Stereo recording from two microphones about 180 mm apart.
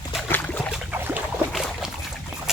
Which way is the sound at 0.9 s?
10° right (ahead or behind).